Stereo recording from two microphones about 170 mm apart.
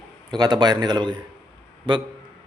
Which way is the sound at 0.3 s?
25° right (ahead or behind).